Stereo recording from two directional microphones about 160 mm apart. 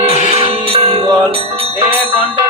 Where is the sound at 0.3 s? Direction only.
35° right (ahead or behind).